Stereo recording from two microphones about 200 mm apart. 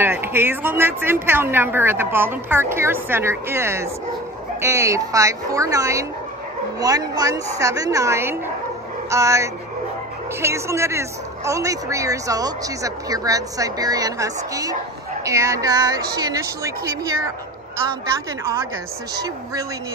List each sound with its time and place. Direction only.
0.0 s a woman's voice: 10° right (ahead or behind)
18.4 s a woman's voice: 15° right (ahead or behind)